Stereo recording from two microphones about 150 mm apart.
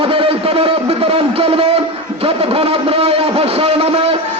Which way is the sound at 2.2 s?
40° right (ahead or behind).